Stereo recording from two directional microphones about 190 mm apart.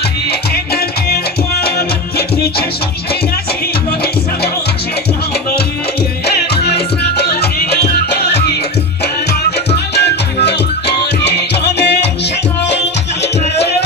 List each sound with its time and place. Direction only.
0.3 s music: 55° left (ahead or behind)
6.2 s music: 60° left (ahead or behind)
9.7 s music: 60° left (ahead or behind)